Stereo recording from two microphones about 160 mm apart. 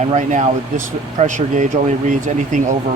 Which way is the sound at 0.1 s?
50° right (ahead or behind).